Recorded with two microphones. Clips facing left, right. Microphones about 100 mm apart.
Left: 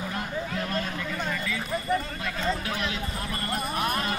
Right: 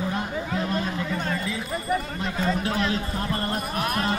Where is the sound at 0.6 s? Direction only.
20° right (ahead or behind).